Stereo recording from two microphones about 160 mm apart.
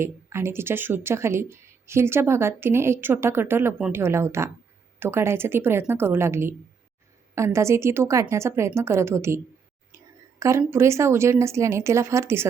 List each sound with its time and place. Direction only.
0.0 s speech: 15° right (ahead or behind)
10.4 s speech: 15° right (ahead or behind)